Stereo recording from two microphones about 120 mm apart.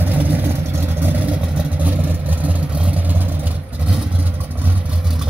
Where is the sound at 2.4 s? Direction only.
10° right (ahead or behind).